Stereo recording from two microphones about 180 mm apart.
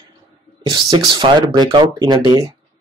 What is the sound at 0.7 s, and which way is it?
Speech, 25° right (ahead or behind).